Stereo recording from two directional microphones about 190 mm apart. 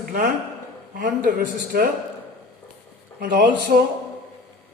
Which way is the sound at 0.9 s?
45° right (ahead or behind).